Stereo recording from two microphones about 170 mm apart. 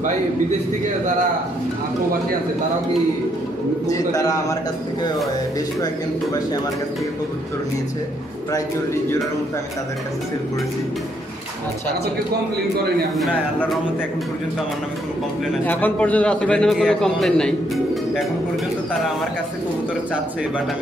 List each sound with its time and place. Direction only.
3.8 s a man's voice: 20° left (ahead or behind)
13.2 s a man's voice: centre (ahead or behind)
15.6 s a man's voice: 10° left (ahead or behind)